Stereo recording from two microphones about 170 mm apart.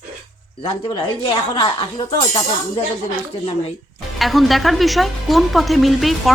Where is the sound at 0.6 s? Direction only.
30° left (ahead or behind).